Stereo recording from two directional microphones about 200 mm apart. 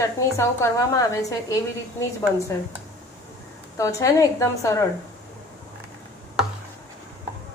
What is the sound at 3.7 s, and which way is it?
A woman's voice, 15° left (ahead or behind).